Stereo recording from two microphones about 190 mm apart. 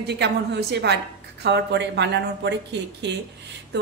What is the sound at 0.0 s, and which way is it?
A woman's voice, 60° right (ahead or behind).